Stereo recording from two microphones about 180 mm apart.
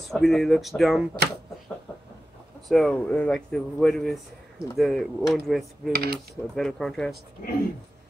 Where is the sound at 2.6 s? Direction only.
Centre (ahead or behind).